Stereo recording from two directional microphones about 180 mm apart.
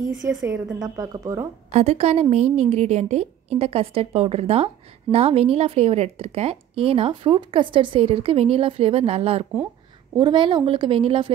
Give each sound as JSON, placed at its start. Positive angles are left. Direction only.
{"t": 0.4, "sound": "a woman's voice", "side_deg": -20}
{"t": 1.7, "sound": "a woman's voice", "side_deg": -40}